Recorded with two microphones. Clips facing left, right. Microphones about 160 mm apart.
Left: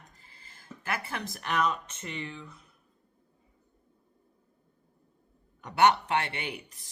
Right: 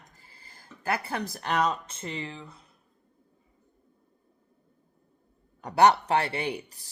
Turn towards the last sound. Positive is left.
turn(degrees=-35)  # may be behind; listen again after turning